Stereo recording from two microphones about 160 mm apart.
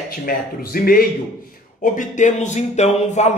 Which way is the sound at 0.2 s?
70° left (ahead or behind).